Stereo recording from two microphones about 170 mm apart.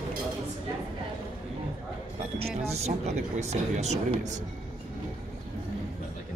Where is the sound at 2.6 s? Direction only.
40° right (ahead or behind).